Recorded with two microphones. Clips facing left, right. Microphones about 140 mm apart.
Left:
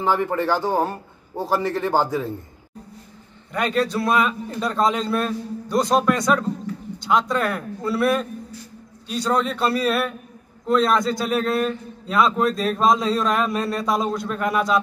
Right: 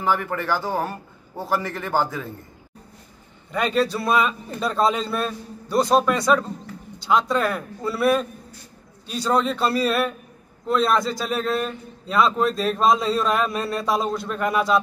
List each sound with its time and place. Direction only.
0.0 s a man's voice: 20° left (ahead or behind)
3.5 s a man's voice: centre (ahead or behind)